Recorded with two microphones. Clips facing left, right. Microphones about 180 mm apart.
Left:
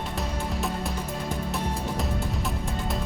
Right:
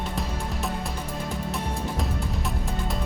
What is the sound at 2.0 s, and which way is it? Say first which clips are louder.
Music: even; centre (ahead or behind).